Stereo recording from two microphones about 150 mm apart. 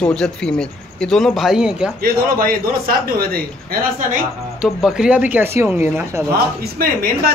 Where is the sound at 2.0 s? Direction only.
75° right (ahead or behind).